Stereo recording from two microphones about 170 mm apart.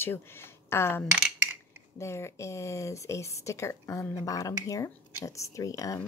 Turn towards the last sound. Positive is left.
turn(degrees=20)  # may be behind; listen again after turning